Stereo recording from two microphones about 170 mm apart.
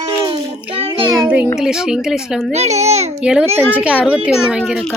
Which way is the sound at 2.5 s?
40° right (ahead or behind).